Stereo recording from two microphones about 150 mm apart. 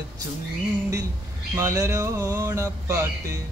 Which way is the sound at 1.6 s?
20° right (ahead or behind).